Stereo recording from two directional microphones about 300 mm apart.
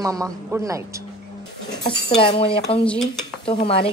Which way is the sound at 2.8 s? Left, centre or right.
Centre.